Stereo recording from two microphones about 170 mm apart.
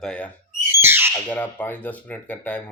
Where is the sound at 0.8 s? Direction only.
15° right (ahead or behind).